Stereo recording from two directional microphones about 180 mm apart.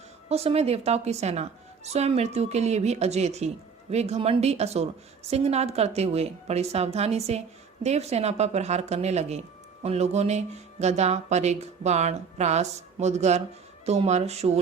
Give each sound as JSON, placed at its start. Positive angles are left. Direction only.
{"t": 0.3, "sound": "a woman's voice", "side_deg": -35}